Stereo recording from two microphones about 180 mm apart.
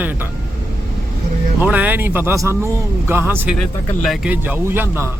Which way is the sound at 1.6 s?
10° right (ahead or behind).